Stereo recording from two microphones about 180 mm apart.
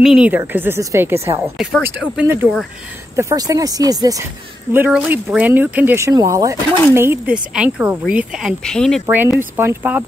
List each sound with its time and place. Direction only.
0.0 s speech: 5° right (ahead or behind)
3.2 s speech: 20° right (ahead or behind)
4.7 s speech: 10° right (ahead or behind)
9.0 s speech: 10° right (ahead or behind)